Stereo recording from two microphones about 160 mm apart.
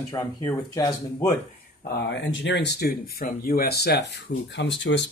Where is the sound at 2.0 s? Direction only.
90° left.